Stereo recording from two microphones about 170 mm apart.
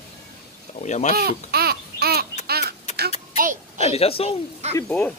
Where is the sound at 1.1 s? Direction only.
65° right (ahead or behind).